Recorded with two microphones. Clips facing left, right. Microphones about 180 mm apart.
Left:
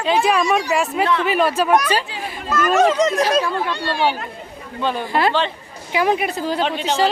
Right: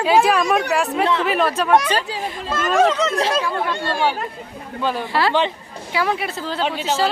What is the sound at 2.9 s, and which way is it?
Speech, 15° left (ahead or behind).